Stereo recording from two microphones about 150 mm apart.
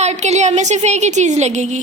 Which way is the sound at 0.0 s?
50° right (ahead or behind).